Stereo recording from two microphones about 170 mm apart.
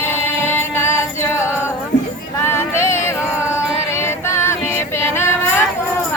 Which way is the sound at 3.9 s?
15° left (ahead or behind).